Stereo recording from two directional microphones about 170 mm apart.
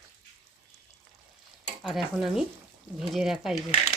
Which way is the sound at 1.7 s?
Centre (ahead or behind).